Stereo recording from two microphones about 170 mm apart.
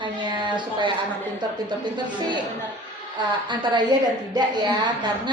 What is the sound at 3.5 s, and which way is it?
Speech, 25° right (ahead or behind).